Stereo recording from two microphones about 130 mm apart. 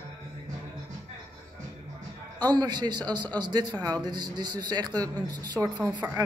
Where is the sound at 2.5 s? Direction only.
30° right (ahead or behind).